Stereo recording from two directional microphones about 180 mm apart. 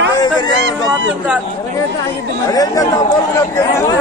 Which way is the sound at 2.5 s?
20° left (ahead or behind).